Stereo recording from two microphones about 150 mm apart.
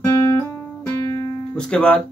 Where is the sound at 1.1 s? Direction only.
30° left (ahead or behind).